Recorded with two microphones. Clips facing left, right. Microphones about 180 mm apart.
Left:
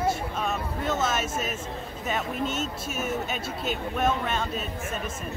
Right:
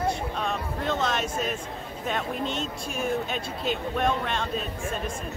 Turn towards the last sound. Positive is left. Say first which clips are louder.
# right 1 dB
turn(degrees=5)  # may be behind; listen again after turning